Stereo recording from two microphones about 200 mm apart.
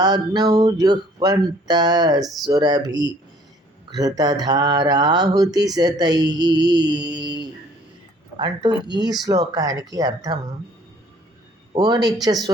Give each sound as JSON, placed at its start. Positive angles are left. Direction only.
{"t": 0.0, "sound": "a man's voice", "side_deg": -20}
{"t": 11.8, "sound": "speech", "side_deg": -20}